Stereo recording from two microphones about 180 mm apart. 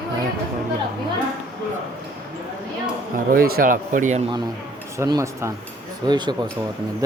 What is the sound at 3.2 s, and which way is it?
Speech, 55° right (ahead or behind).